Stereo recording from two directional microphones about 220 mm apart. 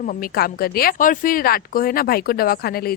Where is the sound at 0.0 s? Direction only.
40° left (ahead or behind).